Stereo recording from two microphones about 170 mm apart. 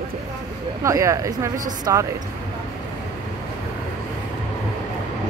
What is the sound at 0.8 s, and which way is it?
Speech, 20° right (ahead or behind).